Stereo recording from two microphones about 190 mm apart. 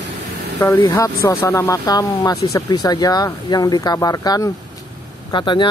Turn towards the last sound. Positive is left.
turn(degrees=25)  # may be behind; listen again after turning